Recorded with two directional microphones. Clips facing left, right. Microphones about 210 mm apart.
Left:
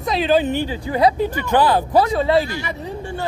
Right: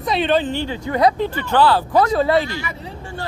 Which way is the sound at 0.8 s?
30° left (ahead or behind).